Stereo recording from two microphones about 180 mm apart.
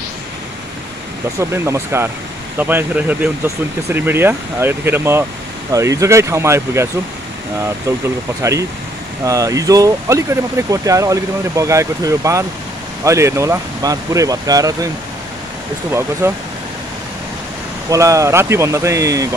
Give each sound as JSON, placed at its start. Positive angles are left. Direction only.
{"t": 1.4, "sound": "speech", "side_deg": -15}
{"t": 8.4, "sound": "speech", "side_deg": -15}
{"t": 16.2, "sound": "speech", "side_deg": -15}
{"t": 17.8, "sound": "speech", "side_deg": -15}